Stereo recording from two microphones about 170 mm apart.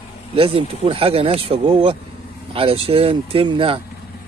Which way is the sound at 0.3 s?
35° right (ahead or behind).